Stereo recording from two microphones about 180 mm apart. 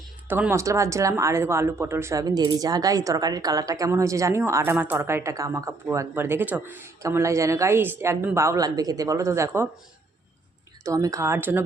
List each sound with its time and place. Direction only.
0.3 s speech: 10° right (ahead or behind)
10.8 s speech: 20° right (ahead or behind)